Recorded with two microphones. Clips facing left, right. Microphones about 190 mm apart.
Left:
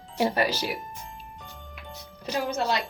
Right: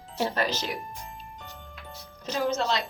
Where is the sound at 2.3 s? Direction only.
10° left (ahead or behind).